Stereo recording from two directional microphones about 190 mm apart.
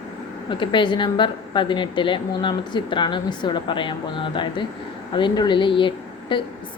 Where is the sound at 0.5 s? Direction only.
25° left (ahead or behind).